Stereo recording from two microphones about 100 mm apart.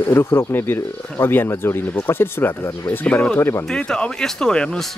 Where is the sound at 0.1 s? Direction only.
25° left (ahead or behind).